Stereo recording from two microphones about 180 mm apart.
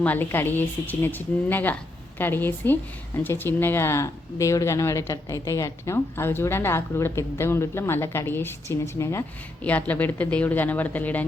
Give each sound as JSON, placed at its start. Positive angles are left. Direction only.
{"t": 0.0, "sound": "speech", "side_deg": 10}